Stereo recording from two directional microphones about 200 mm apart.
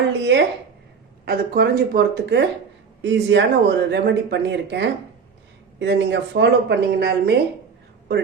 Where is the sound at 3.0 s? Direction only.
65° right (ahead or behind).